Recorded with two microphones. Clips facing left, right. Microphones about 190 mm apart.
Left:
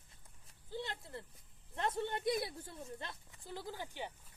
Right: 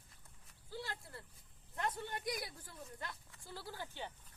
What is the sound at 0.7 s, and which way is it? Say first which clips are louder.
Speech: left 3 dB; 20° left (ahead or behind).